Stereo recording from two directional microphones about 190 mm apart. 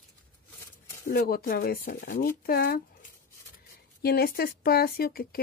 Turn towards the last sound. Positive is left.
turn(degrees=50)  # may be behind; listen again after turning